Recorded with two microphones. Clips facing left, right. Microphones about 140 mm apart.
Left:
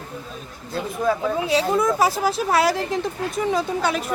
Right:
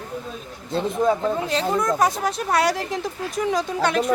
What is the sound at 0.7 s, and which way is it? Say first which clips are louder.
Speech: right 2 dB; 25° right (ahead or behind).